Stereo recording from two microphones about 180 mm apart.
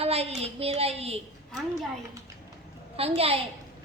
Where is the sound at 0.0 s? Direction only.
35° right (ahead or behind).